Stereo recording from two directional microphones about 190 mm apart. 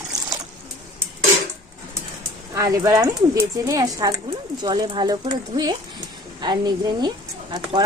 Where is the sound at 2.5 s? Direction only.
15° right (ahead or behind).